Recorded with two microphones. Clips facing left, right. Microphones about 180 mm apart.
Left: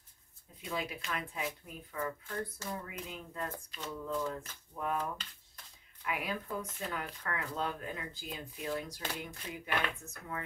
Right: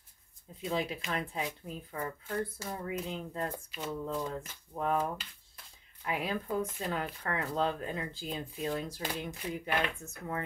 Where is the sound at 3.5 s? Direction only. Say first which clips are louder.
Right 4 dB; 10° right (ahead or behind).